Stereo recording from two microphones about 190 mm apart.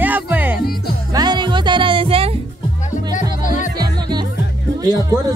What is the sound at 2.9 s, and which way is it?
Music, 40° left (ahead or behind).